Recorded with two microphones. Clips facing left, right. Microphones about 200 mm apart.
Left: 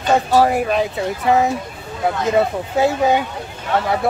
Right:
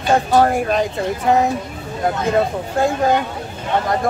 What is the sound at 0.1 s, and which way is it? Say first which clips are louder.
Speech: even; 5° left (ahead or behind).